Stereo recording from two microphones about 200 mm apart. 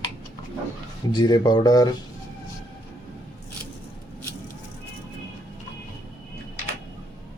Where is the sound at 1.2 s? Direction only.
20° left (ahead or behind).